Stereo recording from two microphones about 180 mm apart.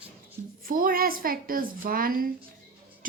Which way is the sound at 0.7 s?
50° right (ahead or behind).